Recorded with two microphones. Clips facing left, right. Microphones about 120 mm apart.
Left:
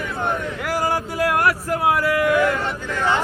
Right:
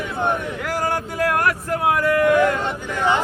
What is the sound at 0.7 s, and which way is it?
Speech, 10° left (ahead or behind).